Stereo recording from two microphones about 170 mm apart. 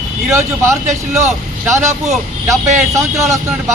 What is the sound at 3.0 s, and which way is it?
Speech, 15° right (ahead or behind).